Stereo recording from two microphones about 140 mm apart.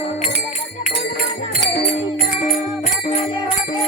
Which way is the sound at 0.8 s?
90° left.